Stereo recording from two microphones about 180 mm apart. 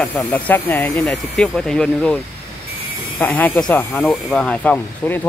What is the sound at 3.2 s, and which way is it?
Speech, 10° left (ahead or behind).